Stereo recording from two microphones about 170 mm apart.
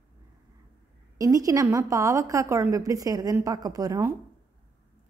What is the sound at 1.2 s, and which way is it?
A woman's voice, 20° right (ahead or behind).